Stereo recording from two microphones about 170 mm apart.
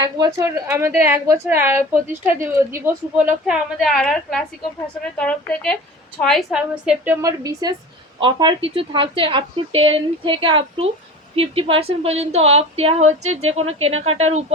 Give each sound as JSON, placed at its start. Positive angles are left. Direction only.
{"t": 0.0, "sound": "a woman's voice", "side_deg": -20}